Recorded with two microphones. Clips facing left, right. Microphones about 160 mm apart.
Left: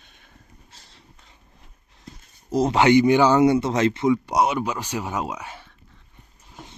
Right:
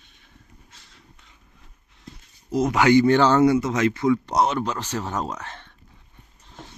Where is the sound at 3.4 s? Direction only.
30° left (ahead or behind).